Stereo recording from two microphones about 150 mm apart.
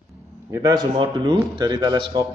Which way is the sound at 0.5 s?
25° right (ahead or behind).